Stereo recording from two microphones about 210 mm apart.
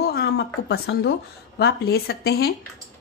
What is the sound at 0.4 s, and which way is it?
A woman's voice, 50° left (ahead or behind).